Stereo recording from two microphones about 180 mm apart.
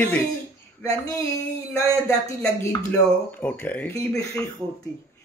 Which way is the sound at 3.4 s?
10° left (ahead or behind).